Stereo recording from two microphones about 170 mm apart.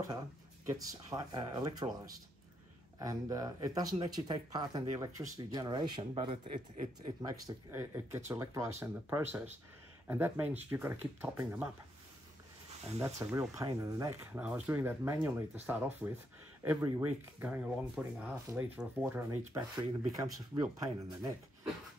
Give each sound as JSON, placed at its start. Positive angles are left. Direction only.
{"t": 0.7, "sound": "speech", "side_deg": -20}
{"t": 3.0, "sound": "speech", "side_deg": -20}
{"t": 7.2, "sound": "speech", "side_deg": -15}
{"t": 13.0, "sound": "speech", "side_deg": -15}